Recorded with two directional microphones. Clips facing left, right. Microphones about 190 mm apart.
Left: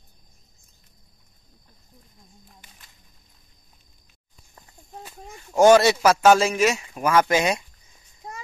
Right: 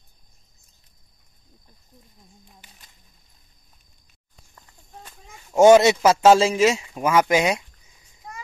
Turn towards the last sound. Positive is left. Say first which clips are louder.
# right 1 dB
turn(degrees=-15)  # may be behind; listen again after turning